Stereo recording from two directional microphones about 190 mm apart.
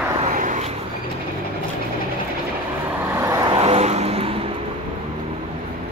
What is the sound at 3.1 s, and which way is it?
Vehicle, 15° right (ahead or behind).